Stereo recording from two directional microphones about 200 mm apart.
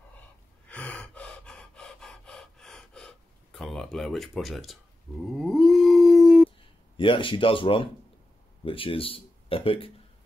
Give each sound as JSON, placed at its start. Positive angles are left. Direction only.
{"t": 0.7, "sound": "gasp", "side_deg": 5}
{"t": 5.2, "sound": "dog", "side_deg": 0}
{"t": 7.0, "sound": "speech", "side_deg": 25}